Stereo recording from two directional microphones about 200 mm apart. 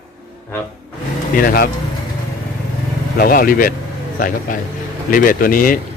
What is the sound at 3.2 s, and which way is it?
Speech, 45° left (ahead or behind).